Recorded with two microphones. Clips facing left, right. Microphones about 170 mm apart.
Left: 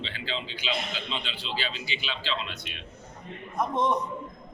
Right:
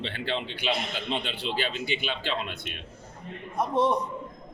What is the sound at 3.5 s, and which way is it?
Speech, 35° right (ahead or behind).